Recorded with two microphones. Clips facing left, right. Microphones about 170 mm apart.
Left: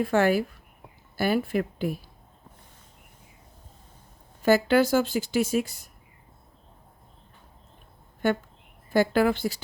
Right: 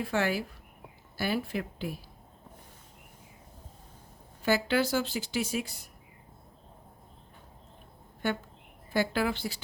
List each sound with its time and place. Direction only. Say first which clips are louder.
0.0 s speech: left 7 dB; 50° left (ahead or behind)
4.4 s speech: left 7 dB; 45° left (ahead or behind)
8.9 s speech: left 7 dB; 50° left (ahead or behind)